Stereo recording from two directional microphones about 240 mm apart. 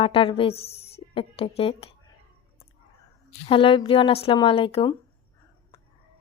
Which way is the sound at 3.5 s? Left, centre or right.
Left.